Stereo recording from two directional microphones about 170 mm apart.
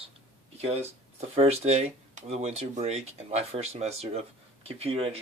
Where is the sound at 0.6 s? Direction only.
40° right (ahead or behind).